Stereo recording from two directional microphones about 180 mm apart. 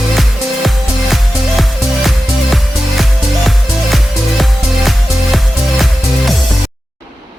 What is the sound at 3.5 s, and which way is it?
Music, centre (ahead or behind).